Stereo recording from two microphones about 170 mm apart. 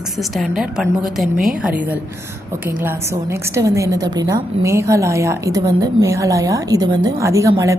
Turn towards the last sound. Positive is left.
turn(degrees=-20)  # may be behind; listen again after turning